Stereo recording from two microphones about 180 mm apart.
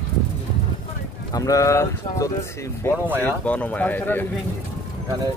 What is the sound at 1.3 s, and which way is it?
Speech, 20° left (ahead or behind).